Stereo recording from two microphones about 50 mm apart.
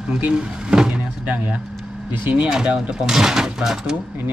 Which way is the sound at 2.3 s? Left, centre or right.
Centre.